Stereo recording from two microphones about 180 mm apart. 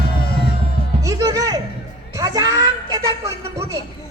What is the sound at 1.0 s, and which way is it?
A woman's voice, 20° right (ahead or behind).